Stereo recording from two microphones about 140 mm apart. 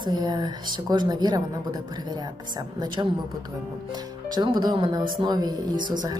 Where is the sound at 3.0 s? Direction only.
25° right (ahead or behind).